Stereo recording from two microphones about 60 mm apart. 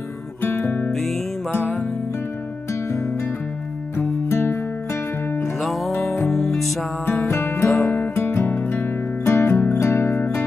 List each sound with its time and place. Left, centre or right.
0.4 s music: left
4.3 s music: left
5.4 s music: centre
7.2 s music: left
7.6 s music: centre
7.9 s music: left